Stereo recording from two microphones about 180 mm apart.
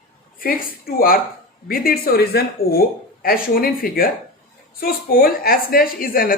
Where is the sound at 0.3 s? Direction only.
55° left (ahead or behind).